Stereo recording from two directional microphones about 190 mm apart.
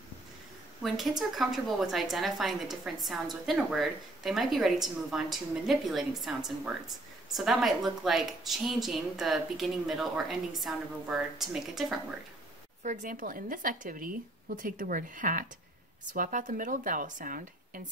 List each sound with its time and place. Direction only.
1.3 s a woman's voice: centre (ahead or behind)
12.8 s a woman's voice: 40° right (ahead or behind)